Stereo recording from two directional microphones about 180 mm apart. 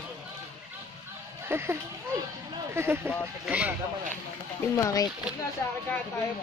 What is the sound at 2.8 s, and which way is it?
Speech, 10° right (ahead or behind).